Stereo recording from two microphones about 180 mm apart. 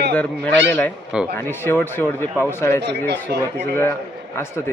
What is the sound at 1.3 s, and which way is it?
A man's voice, 10° left (ahead or behind).